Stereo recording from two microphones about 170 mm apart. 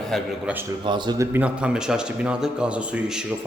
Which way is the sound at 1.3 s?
5° right (ahead or behind).